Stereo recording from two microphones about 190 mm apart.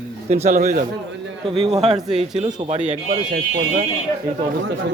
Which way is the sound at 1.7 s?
35° right (ahead or behind).